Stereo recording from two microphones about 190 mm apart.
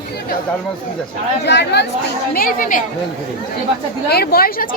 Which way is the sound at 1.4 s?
60° left (ahead or behind).